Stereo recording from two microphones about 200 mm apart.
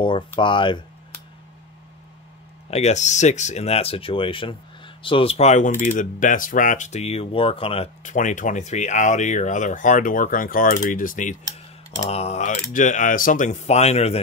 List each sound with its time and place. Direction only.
0.4 s speech: 25° left (ahead or behind)
2.7 s speech: 35° left (ahead or behind)